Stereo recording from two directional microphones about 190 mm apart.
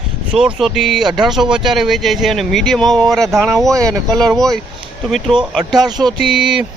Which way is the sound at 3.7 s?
15° right (ahead or behind).